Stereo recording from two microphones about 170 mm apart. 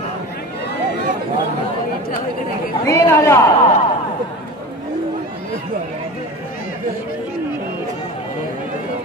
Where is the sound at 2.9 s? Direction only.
15° left (ahead or behind).